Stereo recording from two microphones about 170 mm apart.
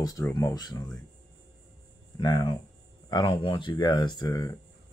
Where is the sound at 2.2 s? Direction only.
25° left (ahead or behind).